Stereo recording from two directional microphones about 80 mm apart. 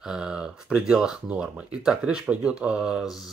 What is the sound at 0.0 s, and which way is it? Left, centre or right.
Speech, centre.